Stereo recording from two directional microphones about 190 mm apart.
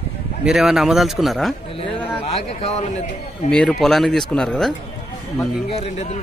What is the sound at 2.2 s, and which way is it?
A man's voice, 35° left (ahead or behind).